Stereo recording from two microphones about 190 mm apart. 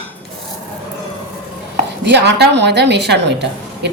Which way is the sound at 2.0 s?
65° right (ahead or behind).